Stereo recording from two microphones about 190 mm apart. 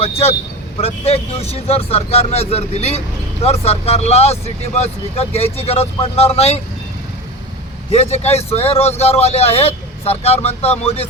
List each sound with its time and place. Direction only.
0.0 s speech: 30° left (ahead or behind)
7.9 s speech: 35° left (ahead or behind)